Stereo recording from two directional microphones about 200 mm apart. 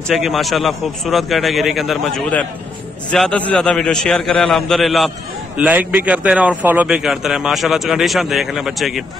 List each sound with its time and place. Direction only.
0.1 s a man's voice: centre (ahead or behind)